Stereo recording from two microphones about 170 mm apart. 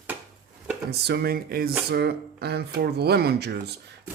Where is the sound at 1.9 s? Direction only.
70° right (ahead or behind).